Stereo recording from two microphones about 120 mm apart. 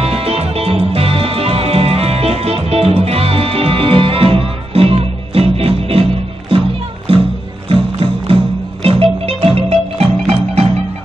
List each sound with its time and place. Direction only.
0.0 s music: 55° right (ahead or behind)
7.1 s music: 50° right (ahead or behind)